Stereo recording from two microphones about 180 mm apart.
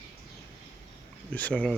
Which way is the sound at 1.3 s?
10° left (ahead or behind).